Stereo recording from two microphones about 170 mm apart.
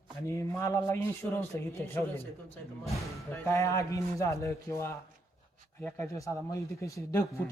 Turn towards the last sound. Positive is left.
turn(degrees=15)  # may be behind; listen again after turning